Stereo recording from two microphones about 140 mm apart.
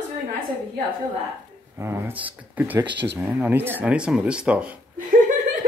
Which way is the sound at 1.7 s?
20° right (ahead or behind).